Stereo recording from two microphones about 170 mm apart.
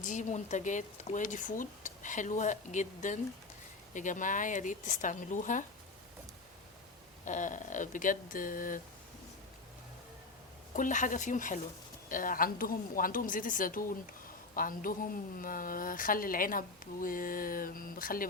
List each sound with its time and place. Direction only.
0.0 s speech: 45° left (ahead or behind)
7.3 s speech: 50° left (ahead or behind)
10.8 s a woman's voice: 50° left (ahead or behind)